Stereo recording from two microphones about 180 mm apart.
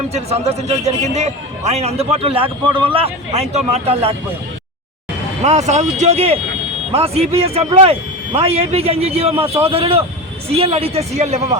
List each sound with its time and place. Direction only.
0.1 s a man's voice: 35° right (ahead or behind)
5.4 s a man's voice: 40° right (ahead or behind)